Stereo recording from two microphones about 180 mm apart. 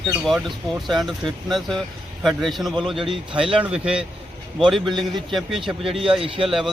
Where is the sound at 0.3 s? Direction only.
Centre (ahead or behind).